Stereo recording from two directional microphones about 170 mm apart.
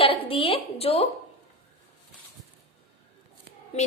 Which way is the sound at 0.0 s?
30° left (ahead or behind).